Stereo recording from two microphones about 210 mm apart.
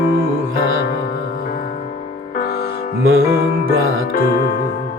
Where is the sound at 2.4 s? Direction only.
50° left (ahead or behind).